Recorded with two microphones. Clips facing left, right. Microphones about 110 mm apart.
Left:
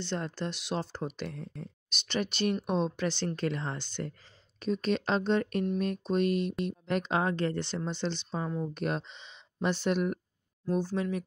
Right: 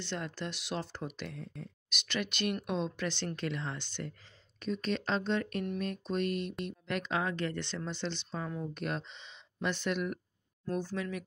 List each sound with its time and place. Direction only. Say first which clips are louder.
0.0 s speech: left 4 dB; 35° left (ahead or behind)
6.2 s speech: left 6 dB; 45° right (ahead or behind)
6.9 s speech: left 4 dB; 35° left (ahead or behind)
8.7 s speech: left 4 dB; 40° left (ahead or behind)